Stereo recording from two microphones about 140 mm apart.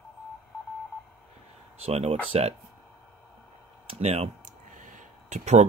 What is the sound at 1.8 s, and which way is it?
Speech, 50° right (ahead or behind).